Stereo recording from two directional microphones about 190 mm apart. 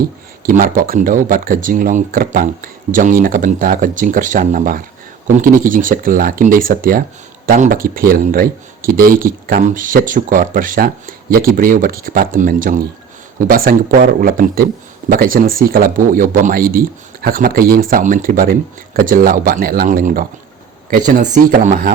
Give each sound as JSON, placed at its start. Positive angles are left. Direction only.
{"t": 0.4, "sound": "speech", "side_deg": -45}